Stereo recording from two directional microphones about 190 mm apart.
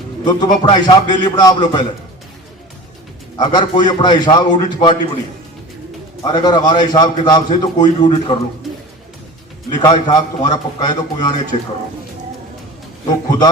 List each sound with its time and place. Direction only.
0.3 s a man's voice: 20° left (ahead or behind)
3.3 s a man's voice: 25° left (ahead or behind)
6.2 s a man's voice: 20° left (ahead or behind)
9.6 s a man's voice: 20° left (ahead or behind)